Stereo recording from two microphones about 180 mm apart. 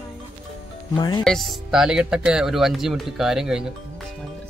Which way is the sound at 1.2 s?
Centre (ahead or behind).